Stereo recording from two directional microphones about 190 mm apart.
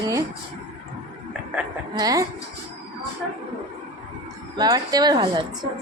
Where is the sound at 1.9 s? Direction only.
20° right (ahead or behind).